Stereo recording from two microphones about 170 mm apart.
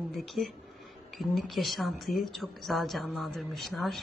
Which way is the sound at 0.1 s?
Centre (ahead or behind).